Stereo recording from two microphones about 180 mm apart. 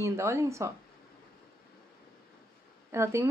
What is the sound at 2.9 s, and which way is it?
Speech, 15° right (ahead or behind).